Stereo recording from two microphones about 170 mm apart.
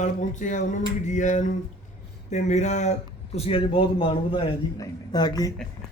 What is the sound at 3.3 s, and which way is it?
A man's voice, 35° left (ahead or behind).